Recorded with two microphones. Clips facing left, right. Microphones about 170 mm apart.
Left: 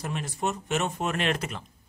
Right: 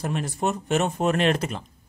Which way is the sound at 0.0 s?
45° right (ahead or behind).